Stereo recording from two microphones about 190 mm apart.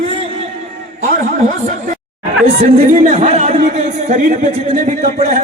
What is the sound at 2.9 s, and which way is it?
Speech, 40° right (ahead or behind).